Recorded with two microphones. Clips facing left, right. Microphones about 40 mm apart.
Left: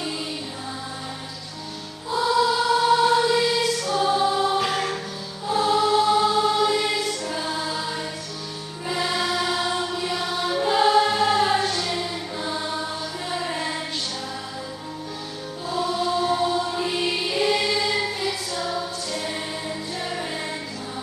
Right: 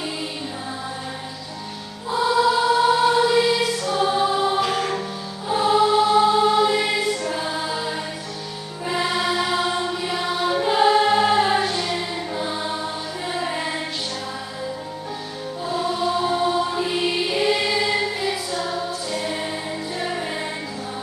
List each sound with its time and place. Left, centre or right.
2.0 s choir: centre
4.6 s music: centre
5.5 s choir: centre
8.8 s music: centre
15.7 s music: centre